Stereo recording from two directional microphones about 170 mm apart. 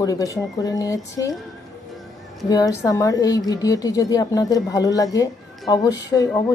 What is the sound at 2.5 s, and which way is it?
A woman's voice, 20° left (ahead or behind).